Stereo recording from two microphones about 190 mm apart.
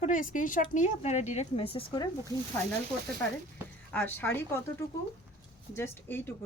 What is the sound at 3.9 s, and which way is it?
Speech, 10° left (ahead or behind).